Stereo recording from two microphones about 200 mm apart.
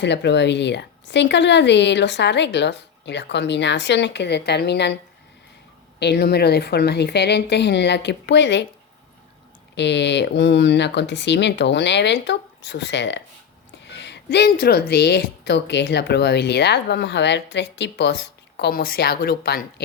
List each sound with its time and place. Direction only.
0.0 s speech: 60° left (ahead or behind)
6.0 s speech: 55° left (ahead or behind)
9.7 s speech: 60° left (ahead or behind)